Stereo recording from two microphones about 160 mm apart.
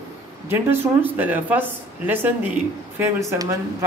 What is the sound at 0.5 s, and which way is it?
Speech, 15° right (ahead or behind).